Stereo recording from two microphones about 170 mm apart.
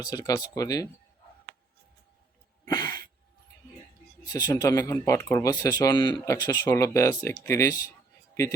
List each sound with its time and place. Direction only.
0.0 s speech: 20° left (ahead or behind)
4.3 s speech: 20° left (ahead or behind)